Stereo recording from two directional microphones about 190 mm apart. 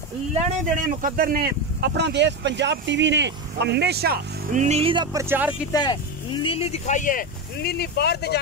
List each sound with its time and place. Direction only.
0.3 s speech: 45° right (ahead or behind); by 5.2 s 25° right (ahead or behind)
5.7 s speech: 20° left (ahead or behind); by 8.4 s 60° left (ahead or behind)